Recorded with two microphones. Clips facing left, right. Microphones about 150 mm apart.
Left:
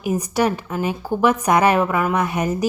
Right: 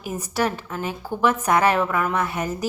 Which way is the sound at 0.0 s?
15° left (ahead or behind).